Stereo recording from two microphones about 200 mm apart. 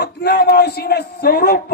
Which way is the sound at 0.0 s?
55° left (ahead or behind).